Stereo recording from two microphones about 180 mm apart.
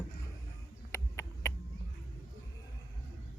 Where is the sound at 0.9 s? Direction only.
15° left (ahead or behind).